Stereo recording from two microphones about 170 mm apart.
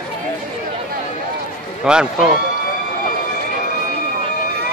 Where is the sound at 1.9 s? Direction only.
5° right (ahead or behind).